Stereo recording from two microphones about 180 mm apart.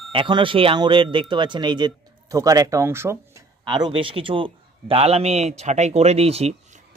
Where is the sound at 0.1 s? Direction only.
30° right (ahead or behind).